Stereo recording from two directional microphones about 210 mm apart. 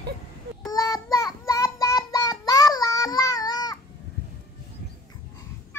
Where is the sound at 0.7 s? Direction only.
15° left (ahead or behind).